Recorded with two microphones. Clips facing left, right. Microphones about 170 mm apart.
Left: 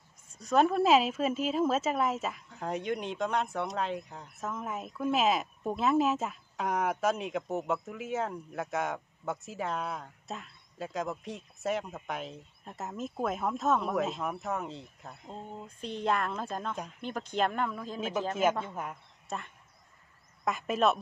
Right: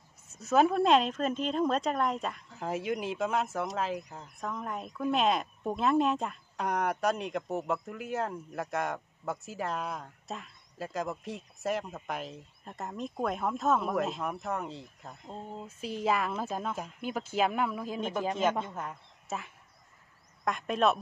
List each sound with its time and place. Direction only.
0.4 s speech: 5° right (ahead or behind)
18.3 s speech: 5° left (ahead or behind)
19.2 s speech: 5° right (ahead or behind)